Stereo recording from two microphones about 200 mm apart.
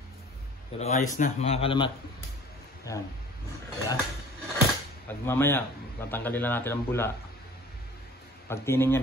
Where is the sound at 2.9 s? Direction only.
15° left (ahead or behind).